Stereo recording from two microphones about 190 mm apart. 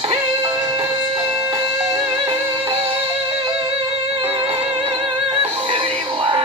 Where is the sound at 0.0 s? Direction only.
30° right (ahead or behind).